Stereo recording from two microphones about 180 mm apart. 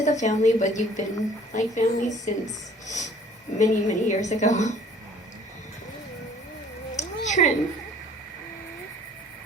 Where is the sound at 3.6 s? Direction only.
40° left (ahead or behind).